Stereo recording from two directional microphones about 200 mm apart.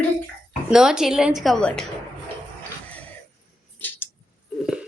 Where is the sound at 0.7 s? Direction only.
5° right (ahead or behind).